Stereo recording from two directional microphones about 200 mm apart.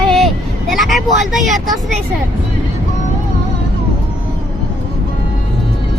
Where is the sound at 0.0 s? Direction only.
Centre (ahead or behind).